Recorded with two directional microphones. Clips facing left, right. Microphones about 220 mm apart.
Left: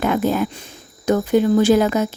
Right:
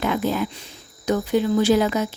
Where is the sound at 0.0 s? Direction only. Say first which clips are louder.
Left 4 dB; 50° left (ahead or behind).